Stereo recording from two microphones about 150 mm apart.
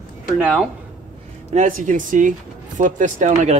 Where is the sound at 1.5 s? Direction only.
60° right (ahead or behind).